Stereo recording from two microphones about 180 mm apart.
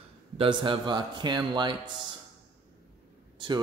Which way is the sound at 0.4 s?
25° right (ahead or behind).